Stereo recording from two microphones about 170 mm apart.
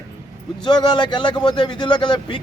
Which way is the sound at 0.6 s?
25° left (ahead or behind).